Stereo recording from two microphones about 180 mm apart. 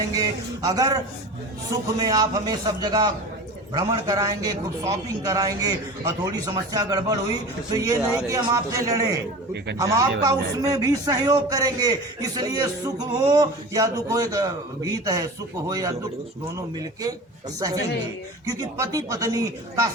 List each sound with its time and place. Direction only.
0.1 s a man's voice: 20° right (ahead or behind)
2.0 s a man's voice: 20° right (ahead or behind)
18.4 s a man's voice: 20° right (ahead or behind)